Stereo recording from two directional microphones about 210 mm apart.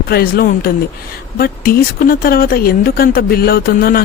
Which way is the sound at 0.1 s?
45° left (ahead or behind).